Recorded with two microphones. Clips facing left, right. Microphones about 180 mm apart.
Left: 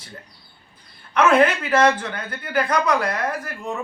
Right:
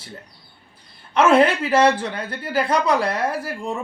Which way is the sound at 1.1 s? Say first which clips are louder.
Right 1 dB; 30° right (ahead or behind).